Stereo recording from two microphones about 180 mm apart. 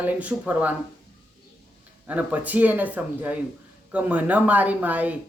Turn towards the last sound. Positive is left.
turn(degrees=-10)  # may be behind; listen again after turning